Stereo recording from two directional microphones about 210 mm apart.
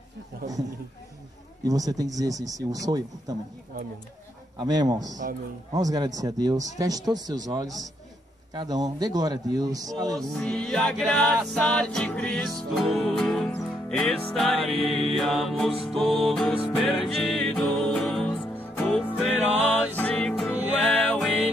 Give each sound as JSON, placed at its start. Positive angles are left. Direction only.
{"t": 1.6, "sound": "speech", "side_deg": -15}
{"t": 4.6, "sound": "a man's voice", "side_deg": -20}
{"t": 5.0, "sound": "a man's voice", "side_deg": -35}
{"t": 5.7, "sound": "a man's voice", "side_deg": -15}
{"t": 10.1, "sound": "music", "side_deg": 5}